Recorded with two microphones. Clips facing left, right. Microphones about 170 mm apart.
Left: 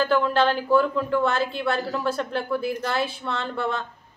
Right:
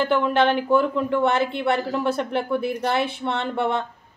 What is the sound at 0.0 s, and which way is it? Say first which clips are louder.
A woman's voice: right 1 dB; 20° right (ahead or behind).